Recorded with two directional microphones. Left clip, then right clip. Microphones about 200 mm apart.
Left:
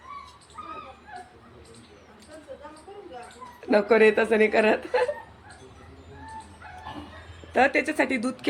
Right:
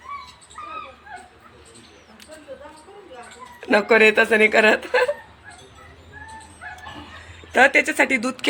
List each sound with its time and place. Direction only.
3.6 s speech: 20° right (ahead or behind)
7.5 s speech: 15° right (ahead or behind)